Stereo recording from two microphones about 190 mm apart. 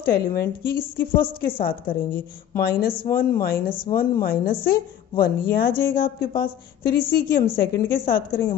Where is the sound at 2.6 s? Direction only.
50° left (ahead or behind).